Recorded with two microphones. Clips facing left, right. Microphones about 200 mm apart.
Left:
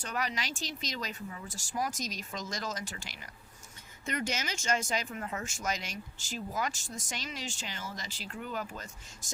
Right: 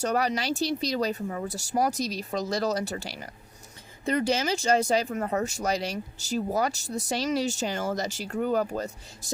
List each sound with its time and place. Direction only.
0.0 s speech: 40° right (ahead or behind)